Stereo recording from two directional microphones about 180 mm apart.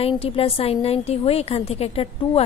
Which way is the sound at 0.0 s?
30° left (ahead or behind).